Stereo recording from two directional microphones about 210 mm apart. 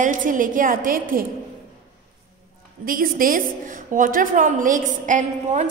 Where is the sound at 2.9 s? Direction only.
40° right (ahead or behind).